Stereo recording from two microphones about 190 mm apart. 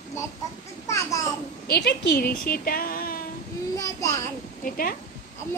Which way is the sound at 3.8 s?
20° left (ahead or behind).